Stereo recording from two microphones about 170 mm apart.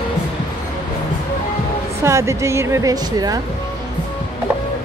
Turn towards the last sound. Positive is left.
turn(degrees=-20)  # may be behind; listen again after turning